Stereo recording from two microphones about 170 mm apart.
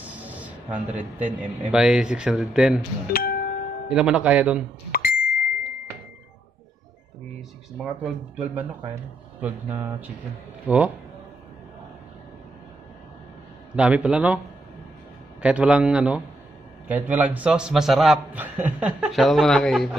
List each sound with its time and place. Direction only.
0.0 s speech: 10° right (ahead or behind)
3.1 s music: 60° left (ahead or behind)
3.9 s speech: 5° right (ahead or behind)
4.9 s a sound: 60° left (ahead or behind)
7.8 s speech: 5° right (ahead or behind)
13.7 s speech: 5° right (ahead or behind)
15.4 s a man's voice: 5° right (ahead or behind)